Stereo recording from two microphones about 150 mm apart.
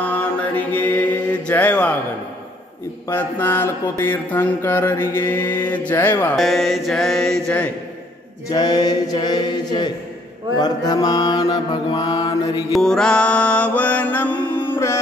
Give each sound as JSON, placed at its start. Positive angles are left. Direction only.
{"t": 0.0, "sound": "mantra", "side_deg": 10}
{"t": 3.1, "sound": "mantra", "side_deg": 15}
{"t": 6.3, "sound": "mantra", "side_deg": 0}
{"t": 8.5, "sound": "mantra", "side_deg": 25}
{"t": 12.7, "sound": "mantra", "side_deg": 5}